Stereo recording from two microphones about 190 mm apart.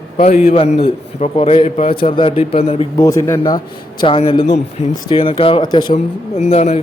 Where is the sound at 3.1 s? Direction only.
15° left (ahead or behind).